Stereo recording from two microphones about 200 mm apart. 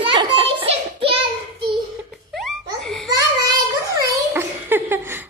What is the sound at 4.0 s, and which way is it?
Giggle, 10° right (ahead or behind).